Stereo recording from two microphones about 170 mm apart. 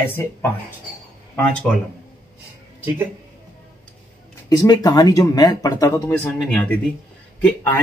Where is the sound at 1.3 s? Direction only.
10° left (ahead or behind).